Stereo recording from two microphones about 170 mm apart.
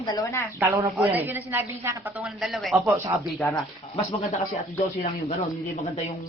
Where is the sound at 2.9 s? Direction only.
20° right (ahead or behind).